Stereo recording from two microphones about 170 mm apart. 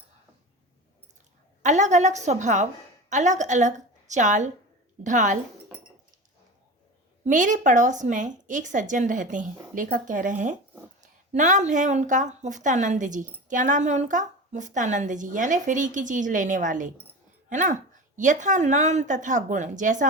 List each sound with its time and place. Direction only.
1.6 s a woman's voice: 45° right (ahead or behind)
7.3 s a woman's voice: 50° right (ahead or behind)